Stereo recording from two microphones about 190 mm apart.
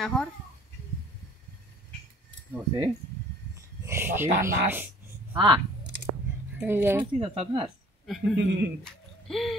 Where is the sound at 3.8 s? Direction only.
15° right (ahead or behind).